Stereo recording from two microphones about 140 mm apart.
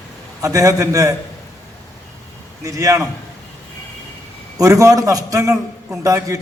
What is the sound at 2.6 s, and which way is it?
Speech, 25° right (ahead or behind).